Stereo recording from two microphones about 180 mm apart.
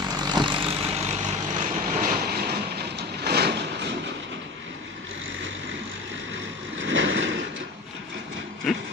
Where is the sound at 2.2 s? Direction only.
60° right (ahead or behind); by 4.3 s 80° right.